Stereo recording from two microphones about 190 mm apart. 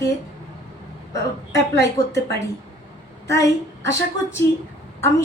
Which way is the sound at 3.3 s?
15° left (ahead or behind).